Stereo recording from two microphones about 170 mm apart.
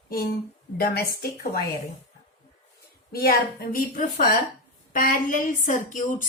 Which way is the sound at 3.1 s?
65° left (ahead or behind).